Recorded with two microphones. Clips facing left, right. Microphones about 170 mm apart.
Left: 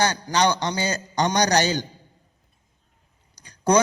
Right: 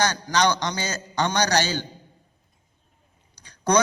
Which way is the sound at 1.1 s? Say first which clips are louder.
Left 1 dB; 40° left (ahead or behind).